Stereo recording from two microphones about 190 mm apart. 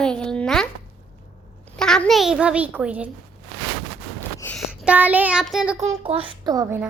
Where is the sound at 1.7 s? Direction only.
5° left (ahead or behind).